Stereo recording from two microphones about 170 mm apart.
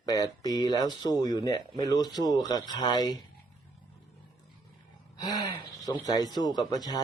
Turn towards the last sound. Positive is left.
turn(degrees=25)  # may be behind; listen again after turning